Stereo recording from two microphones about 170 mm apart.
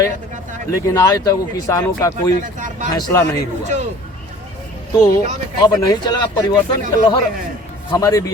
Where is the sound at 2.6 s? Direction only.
45° right (ahead or behind).